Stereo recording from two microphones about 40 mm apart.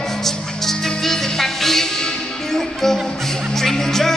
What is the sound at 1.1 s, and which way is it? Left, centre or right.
Music, centre.